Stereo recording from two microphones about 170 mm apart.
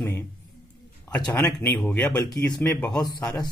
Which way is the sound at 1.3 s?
10° left (ahead or behind).